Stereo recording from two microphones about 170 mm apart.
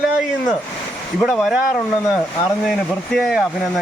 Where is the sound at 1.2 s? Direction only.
Centre (ahead or behind).